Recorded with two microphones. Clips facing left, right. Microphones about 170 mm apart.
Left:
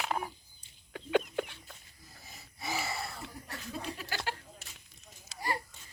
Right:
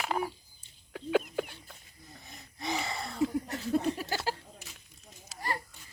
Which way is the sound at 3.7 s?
45° right (ahead or behind).